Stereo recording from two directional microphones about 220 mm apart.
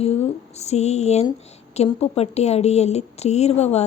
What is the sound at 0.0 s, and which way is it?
A woman's voice, 30° left (ahead or behind).